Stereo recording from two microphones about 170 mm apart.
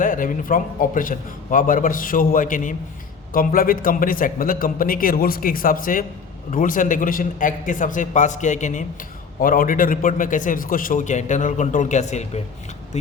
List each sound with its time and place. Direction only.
0.0 s a man's voice: 50° left (ahead or behind)